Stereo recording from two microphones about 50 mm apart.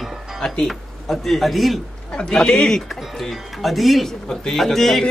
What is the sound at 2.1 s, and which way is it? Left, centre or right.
Speech, centre.